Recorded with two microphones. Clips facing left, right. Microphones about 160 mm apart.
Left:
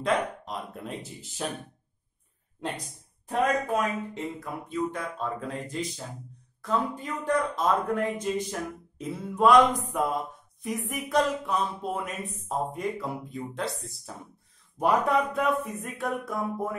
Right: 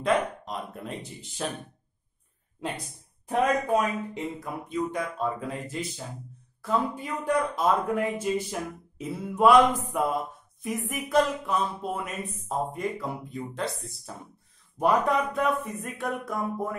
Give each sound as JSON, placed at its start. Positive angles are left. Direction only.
{"t": 0.0, "sound": "speech", "side_deg": 0}
{"t": 3.3, "sound": "speech", "side_deg": -15}